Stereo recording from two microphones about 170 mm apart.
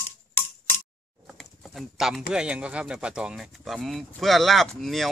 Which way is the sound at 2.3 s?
5° right (ahead or behind).